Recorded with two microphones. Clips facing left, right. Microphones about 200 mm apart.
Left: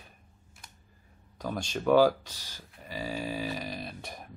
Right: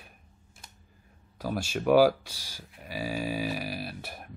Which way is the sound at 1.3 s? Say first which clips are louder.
Right 2 dB; 5° right (ahead or behind).